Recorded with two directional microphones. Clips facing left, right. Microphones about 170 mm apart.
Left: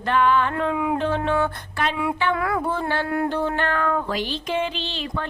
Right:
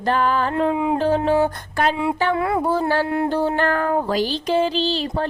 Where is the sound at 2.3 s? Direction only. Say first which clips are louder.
Right 3 dB; 25° right (ahead or behind).